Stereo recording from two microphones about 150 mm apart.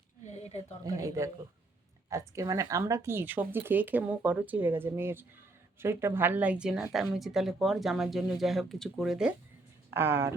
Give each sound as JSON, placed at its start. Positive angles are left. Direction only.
{"t": 0.3, "sound": "a sound", "side_deg": 45}
{"t": 0.9, "sound": "speech", "side_deg": -20}
{"t": 9.9, "sound": "speech", "side_deg": -15}